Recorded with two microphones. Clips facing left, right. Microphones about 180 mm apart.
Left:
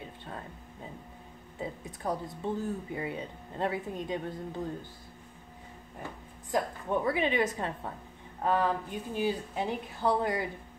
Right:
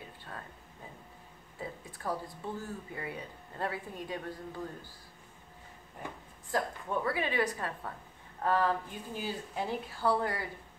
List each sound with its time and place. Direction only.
0.3 s a sound: 20° left (ahead or behind)
1.6 s speech: 20° left (ahead or behind)
6.5 s speech: 20° left (ahead or behind)